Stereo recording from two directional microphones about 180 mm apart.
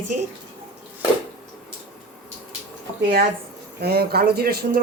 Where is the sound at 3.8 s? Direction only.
60° right (ahead or behind).